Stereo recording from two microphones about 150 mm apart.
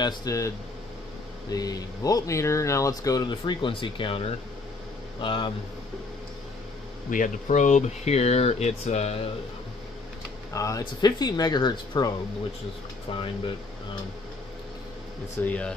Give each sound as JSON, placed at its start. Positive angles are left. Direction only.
{"t": 0.0, "sound": "speech", "side_deg": 25}
{"t": 1.5, "sound": "speech", "side_deg": 25}
{"t": 5.2, "sound": "speech", "side_deg": 35}
{"t": 7.1, "sound": "speech", "side_deg": 60}
{"t": 10.5, "sound": "speech", "side_deg": 20}
{"t": 15.4, "sound": "speech", "side_deg": 10}